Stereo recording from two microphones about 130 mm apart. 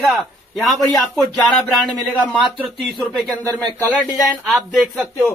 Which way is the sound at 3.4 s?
10° left (ahead or behind).